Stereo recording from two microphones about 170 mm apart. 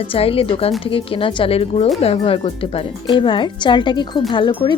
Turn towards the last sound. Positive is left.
turn(degrees=30)  # may be behind; listen again after turning